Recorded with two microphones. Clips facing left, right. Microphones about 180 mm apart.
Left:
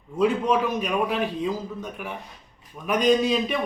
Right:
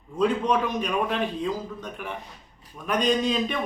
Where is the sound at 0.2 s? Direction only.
10° left (ahead or behind).